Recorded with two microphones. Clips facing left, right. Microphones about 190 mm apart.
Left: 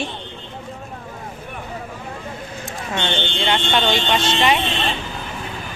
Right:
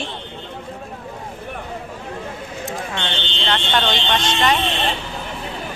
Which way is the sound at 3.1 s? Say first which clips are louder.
Left 4 dB; 50° left (ahead or behind).